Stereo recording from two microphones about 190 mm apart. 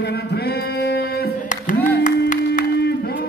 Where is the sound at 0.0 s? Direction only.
60° left (ahead or behind).